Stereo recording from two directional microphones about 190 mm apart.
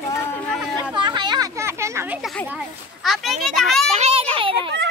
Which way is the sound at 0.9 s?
25° right (ahead or behind).